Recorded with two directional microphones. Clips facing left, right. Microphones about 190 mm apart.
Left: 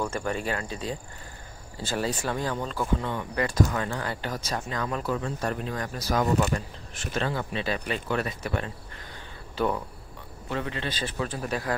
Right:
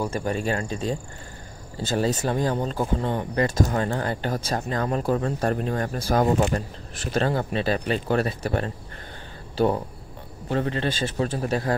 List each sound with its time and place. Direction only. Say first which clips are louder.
0.0 s speech: right 3 dB; 35° right (ahead or behind)
0.7 s speech: right 5 dB; 45° right (ahead or behind)
2.0 s speech: right 5 dB; 40° right (ahead or behind)
4.6 s speech: right 5 dB; 40° right (ahead or behind)
10.5 s speech: right 6 dB; 40° right (ahead or behind)